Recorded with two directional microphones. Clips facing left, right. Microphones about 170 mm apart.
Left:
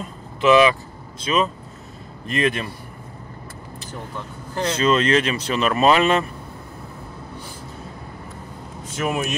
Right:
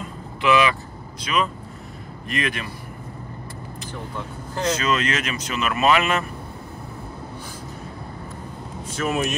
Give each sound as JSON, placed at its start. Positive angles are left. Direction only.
{"t": 0.4, "sound": "a man's voice", "side_deg": 25}
{"t": 4.6, "sound": "speech", "side_deg": 30}
{"t": 9.0, "sound": "speech", "side_deg": 10}